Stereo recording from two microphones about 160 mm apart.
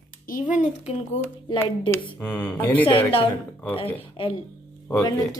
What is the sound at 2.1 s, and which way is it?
Mantra, 10° left (ahead or behind).